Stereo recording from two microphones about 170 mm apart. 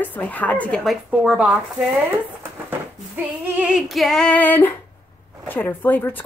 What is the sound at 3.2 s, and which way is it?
Female singing, 5° right (ahead or behind).